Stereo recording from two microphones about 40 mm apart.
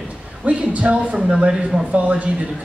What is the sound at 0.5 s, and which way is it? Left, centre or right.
Speech, right.